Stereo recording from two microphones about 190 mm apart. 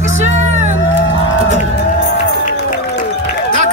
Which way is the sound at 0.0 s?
40° right (ahead or behind).